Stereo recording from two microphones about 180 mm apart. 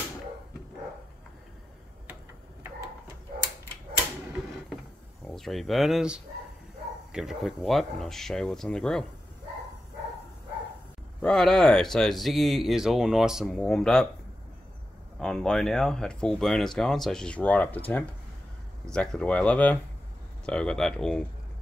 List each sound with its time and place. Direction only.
5.2 s speech: centre (ahead or behind)
11.1 s speech: 5° left (ahead or behind)
15.1 s speech: 5° left (ahead or behind)